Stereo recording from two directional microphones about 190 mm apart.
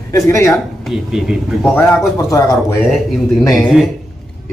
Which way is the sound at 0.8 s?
Centre (ahead or behind).